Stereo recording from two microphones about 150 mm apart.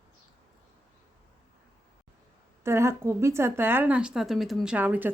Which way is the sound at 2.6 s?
15° right (ahead or behind).